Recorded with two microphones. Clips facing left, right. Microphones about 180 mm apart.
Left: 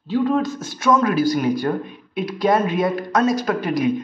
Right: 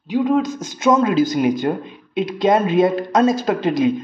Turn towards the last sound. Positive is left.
turn(degrees=-25)  # may be behind; listen again after turning